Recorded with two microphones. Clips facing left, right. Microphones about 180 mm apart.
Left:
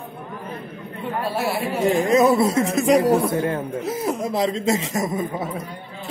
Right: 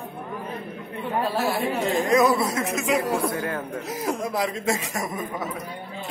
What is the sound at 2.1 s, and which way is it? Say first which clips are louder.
Speech: left 3 dB; 25° left (ahead or behind).